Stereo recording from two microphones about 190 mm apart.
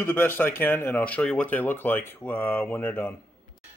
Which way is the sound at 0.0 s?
10° left (ahead or behind).